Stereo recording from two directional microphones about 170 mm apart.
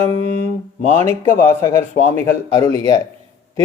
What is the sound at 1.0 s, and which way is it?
Speech, 15° left (ahead or behind).